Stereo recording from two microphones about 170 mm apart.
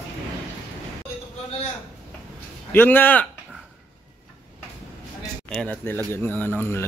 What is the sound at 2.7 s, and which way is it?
Speech, 10° left (ahead or behind).